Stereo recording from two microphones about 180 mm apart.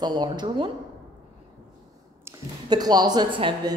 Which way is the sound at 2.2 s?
20° right (ahead or behind).